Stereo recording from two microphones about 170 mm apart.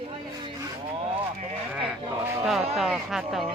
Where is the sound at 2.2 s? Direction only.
15° right (ahead or behind).